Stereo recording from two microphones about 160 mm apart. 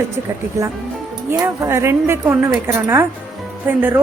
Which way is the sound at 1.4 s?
15° right (ahead or behind).